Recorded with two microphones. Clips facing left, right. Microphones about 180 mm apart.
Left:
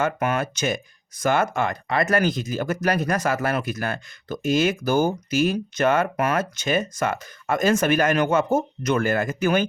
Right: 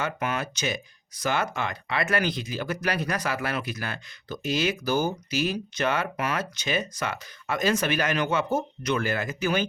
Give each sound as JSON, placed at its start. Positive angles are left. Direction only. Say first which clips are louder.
{"t": 0.0, "sound": "speech", "louder": "left 6 dB", "side_deg": 50}